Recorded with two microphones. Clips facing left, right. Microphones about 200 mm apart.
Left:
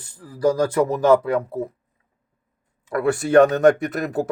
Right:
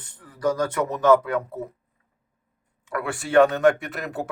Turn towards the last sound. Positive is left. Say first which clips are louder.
# left 7 dB
turn(degrees=40)  # may be behind; listen again after turning